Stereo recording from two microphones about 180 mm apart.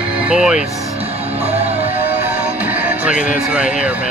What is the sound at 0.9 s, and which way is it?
Music, 35° right (ahead or behind).